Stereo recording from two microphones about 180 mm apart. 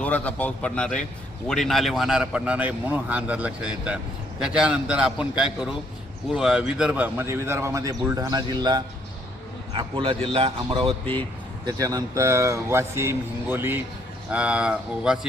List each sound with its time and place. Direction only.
0.0 s a man's voice: 10° left (ahead or behind); by 10.9 s 30° right (ahead or behind)
11.6 s a man's voice: 20° right (ahead or behind); by 15.3 s 5° right (ahead or behind)